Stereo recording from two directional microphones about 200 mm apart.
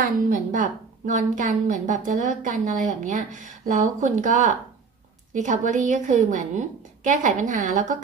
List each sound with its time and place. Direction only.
0.0 s a woman's voice: 40° right (ahead or behind)